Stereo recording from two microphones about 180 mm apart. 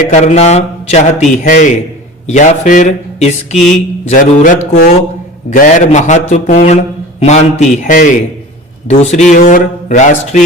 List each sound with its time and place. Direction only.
0.1 s a man's voice: 40° left (ahead or behind)